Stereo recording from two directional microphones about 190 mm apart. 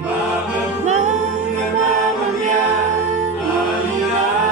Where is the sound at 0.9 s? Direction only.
40° right (ahead or behind).